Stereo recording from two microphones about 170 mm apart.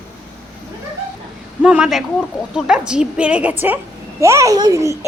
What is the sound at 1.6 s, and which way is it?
A woman's voice, 5° right (ahead or behind).